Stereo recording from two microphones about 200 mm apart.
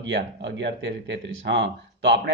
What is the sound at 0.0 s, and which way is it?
Speech, 65° right (ahead or behind).